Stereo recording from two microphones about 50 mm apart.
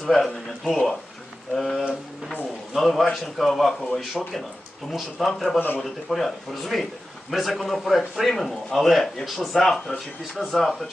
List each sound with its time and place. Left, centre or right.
0.0 s speech: centre
5.5 s speech: left
5.8 s speech: centre